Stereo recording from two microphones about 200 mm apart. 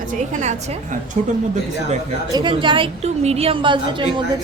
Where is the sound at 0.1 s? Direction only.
35° right (ahead or behind).